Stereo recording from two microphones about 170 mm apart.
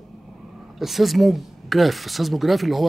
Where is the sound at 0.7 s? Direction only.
Centre (ahead or behind).